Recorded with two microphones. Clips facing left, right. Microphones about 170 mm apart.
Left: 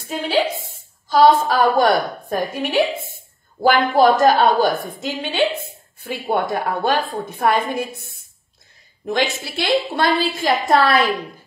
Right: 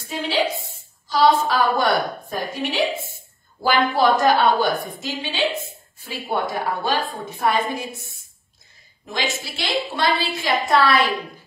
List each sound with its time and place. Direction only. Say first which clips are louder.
0.1 s a woman's voice: left 3 dB; 50° left (ahead or behind)
9.0 s a woman's voice: left 6 dB; 60° left (ahead or behind)